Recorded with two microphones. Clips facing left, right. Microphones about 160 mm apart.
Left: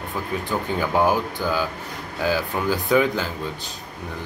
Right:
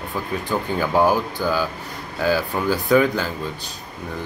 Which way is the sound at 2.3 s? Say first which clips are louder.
Right 2 dB; 15° left (ahead or behind).